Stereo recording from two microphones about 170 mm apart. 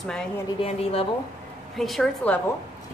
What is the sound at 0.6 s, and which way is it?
Speech, 35° left (ahead or behind).